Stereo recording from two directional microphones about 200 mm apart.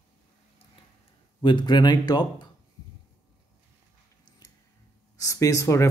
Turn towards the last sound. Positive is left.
turn(degrees=15)  # may be behind; listen again after turning